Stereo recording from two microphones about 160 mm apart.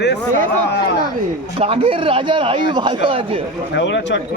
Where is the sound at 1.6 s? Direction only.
35° right (ahead or behind).